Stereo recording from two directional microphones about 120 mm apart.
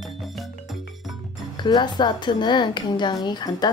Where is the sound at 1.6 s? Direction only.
40° left (ahead or behind).